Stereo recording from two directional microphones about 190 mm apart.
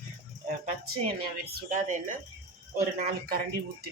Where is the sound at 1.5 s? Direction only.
50° right (ahead or behind).